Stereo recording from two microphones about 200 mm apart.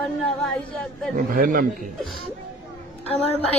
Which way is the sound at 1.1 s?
45° right (ahead or behind).